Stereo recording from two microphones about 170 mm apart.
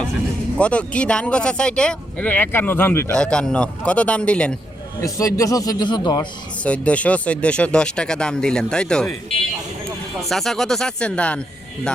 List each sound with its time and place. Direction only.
0.6 s speech: 5° left (ahead or behind)
4.9 s a man's voice: 20° left (ahead or behind)
6.6 s speech: 5° left (ahead or behind)
10.2 s speech: centre (ahead or behind)